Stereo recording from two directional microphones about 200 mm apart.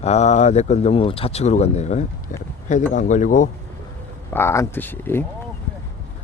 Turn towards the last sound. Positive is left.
turn(degrees=10)  # may be behind; listen again after turning